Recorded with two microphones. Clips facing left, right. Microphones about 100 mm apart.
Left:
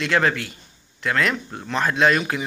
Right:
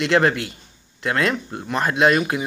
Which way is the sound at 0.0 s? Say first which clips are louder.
Right 3 dB; 20° right (ahead or behind).